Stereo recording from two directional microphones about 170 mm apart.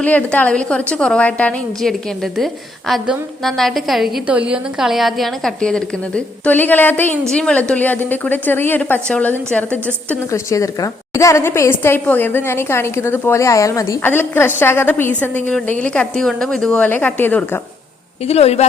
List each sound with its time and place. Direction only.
0.0 s a woman's voice: 10° left (ahead or behind)
18.3 s a woman's voice: 40° left (ahead or behind)